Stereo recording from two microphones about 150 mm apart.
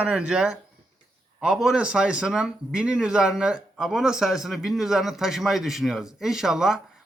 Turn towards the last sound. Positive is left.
turn(degrees=-5)  # may be behind; listen again after turning